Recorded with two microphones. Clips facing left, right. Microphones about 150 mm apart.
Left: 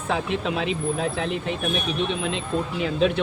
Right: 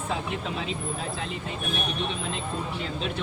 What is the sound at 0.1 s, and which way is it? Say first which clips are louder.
Speech: left 7 dB; 75° left (ahead or behind).